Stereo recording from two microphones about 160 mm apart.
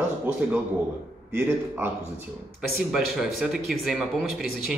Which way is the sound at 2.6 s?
Centre (ahead or behind).